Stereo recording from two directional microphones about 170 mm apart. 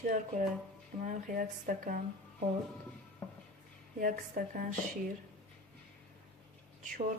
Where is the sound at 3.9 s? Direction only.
55° right (ahead or behind).